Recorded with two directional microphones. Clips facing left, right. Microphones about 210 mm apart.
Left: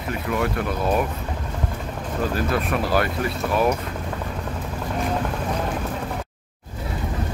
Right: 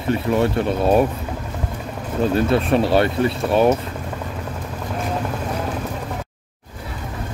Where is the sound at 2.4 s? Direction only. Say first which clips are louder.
Right 8 dB; 30° right (ahead or behind).